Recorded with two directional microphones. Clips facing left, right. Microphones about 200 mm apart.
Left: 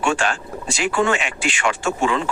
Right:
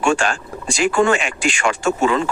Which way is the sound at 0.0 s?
45° right (ahead or behind).